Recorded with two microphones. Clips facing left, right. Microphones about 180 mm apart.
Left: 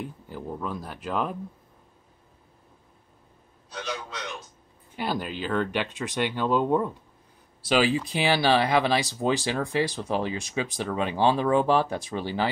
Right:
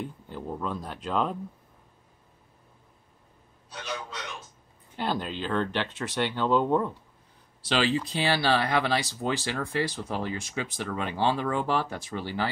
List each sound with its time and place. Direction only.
0.0 s speech: 5° left (ahead or behind)
4.9 s speech: 10° left (ahead or behind)